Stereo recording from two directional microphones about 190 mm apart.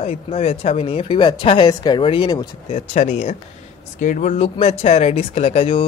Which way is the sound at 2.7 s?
35° left (ahead or behind).